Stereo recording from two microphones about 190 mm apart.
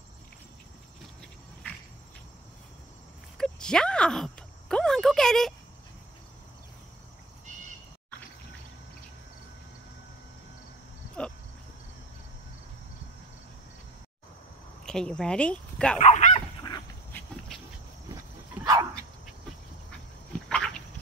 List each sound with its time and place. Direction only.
3.3 s a sound: 5° left (ahead or behind)
14.9 s speech: 5° left (ahead or behind)
16.0 s speech: 40° left (ahead or behind)
16.3 s dog: 20° left (ahead or behind)
17.5 s a sound: centre (ahead or behind)
20.4 s dog: 5° left (ahead or behind)